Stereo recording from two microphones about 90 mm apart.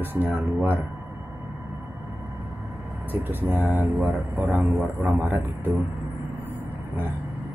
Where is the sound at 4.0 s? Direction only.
20° right (ahead or behind).